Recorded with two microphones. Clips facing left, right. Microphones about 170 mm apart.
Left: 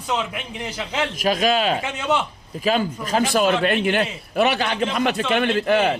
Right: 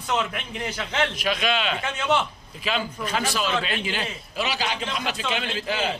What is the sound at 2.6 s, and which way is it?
A man's voice, 45° left (ahead or behind).